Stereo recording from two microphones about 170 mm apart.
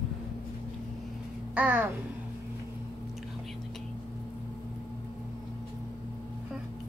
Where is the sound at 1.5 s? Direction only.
10° right (ahead or behind).